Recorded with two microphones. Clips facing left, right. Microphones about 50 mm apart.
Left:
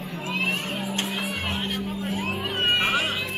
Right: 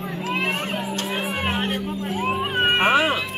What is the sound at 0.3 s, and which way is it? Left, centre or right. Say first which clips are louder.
Crowd: right 2 dB; right.